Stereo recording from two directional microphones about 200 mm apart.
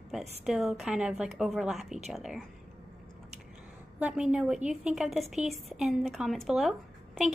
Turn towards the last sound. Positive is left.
turn(degrees=0)  # may be behind; listen again after turning